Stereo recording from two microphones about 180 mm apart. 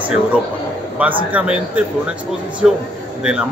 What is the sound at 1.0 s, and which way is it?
A man's voice, 10° right (ahead or behind).